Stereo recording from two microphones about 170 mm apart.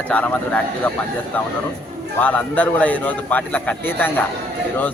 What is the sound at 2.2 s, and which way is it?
A man's voice, 10° left (ahead or behind).